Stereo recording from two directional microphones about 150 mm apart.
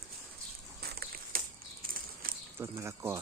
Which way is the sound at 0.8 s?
90° right.